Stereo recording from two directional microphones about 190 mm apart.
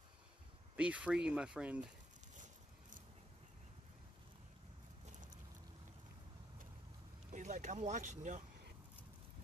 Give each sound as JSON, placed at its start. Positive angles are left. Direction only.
{"t": 0.7, "sound": "speech", "side_deg": -5}
{"t": 2.3, "sound": "a sound", "side_deg": -40}
{"t": 7.3, "sound": "speech", "side_deg": -40}